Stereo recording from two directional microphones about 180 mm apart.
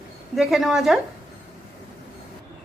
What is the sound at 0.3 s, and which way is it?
Speech, centre (ahead or behind).